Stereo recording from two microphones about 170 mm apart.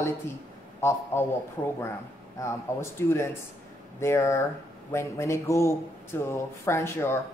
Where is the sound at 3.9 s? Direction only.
15° left (ahead or behind).